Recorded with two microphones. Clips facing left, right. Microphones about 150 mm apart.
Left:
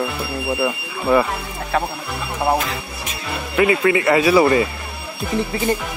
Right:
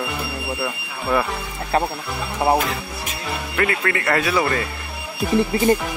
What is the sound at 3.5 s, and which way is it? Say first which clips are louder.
Speech: left 7 dB; 10° left (ahead or behind).